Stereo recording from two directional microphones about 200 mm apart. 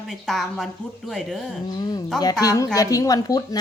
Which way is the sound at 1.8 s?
20° left (ahead or behind).